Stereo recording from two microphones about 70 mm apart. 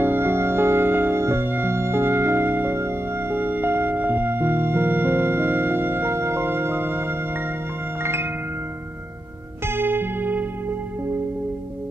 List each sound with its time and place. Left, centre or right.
0.0 s music: right
9.7 s music: right